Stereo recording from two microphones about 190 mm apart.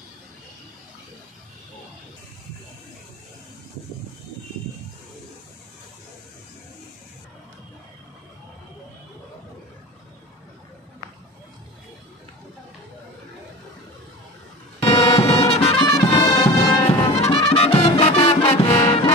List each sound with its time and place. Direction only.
14.8 s music: 30° left (ahead or behind)